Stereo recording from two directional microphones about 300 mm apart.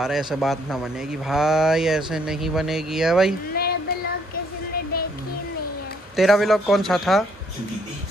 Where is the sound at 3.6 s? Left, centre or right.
Left.